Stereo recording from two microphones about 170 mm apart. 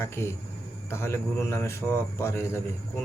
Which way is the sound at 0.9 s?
15° left (ahead or behind).